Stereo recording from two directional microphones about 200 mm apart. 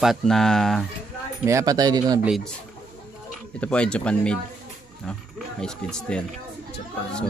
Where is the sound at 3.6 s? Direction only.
5° left (ahead or behind).